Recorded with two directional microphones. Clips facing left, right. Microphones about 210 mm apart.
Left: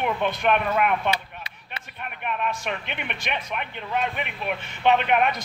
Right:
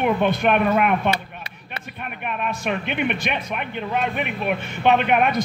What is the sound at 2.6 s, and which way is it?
A man's voice, 15° right (ahead or behind).